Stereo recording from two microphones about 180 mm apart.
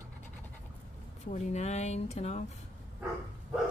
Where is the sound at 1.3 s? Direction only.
40° left (ahead or behind).